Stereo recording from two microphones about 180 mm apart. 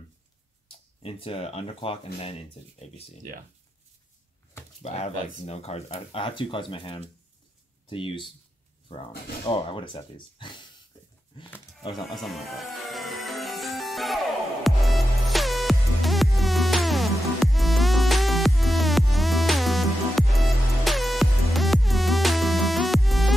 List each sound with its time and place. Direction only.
0.7 s speech: 30° left (ahead or behind)
4.9 s speech: 35° left (ahead or behind)
12.0 s music: centre (ahead or behind)